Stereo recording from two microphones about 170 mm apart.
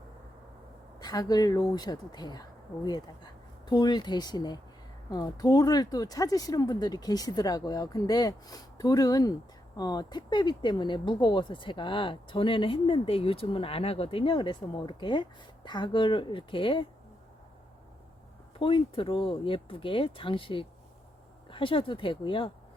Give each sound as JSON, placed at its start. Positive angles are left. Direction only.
{"t": 0.9, "sound": "speech", "side_deg": 20}
{"t": 18.6, "sound": "speech", "side_deg": 30}